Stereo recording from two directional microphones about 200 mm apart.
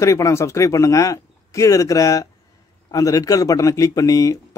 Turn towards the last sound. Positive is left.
turn(degrees=15)  # may be behind; listen again after turning